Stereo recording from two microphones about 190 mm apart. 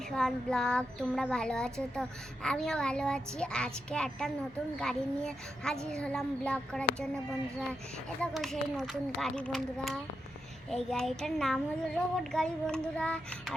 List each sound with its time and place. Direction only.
0.1 s speech: 5° left (ahead or behind)
8.2 s speech: centre (ahead or behind)